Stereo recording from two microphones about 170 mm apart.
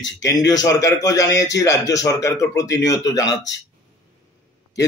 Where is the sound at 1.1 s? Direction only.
90° left.